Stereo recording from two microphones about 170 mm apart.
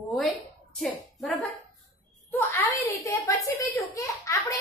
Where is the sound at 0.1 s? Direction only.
Centre (ahead or behind).